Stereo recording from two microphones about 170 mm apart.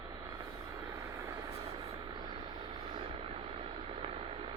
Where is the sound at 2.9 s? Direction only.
30° right (ahead or behind).